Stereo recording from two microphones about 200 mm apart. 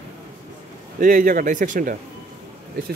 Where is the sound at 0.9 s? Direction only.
45° right (ahead or behind).